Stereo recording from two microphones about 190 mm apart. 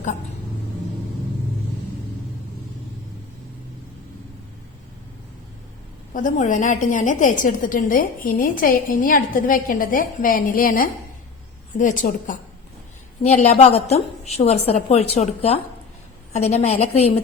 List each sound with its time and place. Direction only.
6.1 s a woman's voice: 40° left (ahead or behind)